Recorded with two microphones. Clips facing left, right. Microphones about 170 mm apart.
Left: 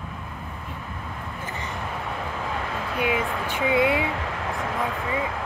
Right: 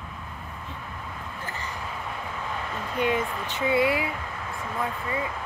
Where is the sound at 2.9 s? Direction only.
10° left (ahead or behind).